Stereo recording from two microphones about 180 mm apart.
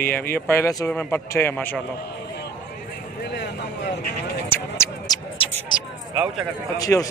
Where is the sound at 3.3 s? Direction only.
70° left (ahead or behind).